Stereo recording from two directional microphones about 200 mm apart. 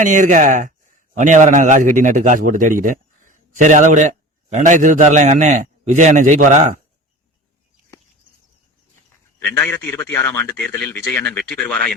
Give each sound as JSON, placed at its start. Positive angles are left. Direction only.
{"t": 0.0, "sound": "a man's voice", "side_deg": -40}
{"t": 9.5, "sound": "speech", "side_deg": 10}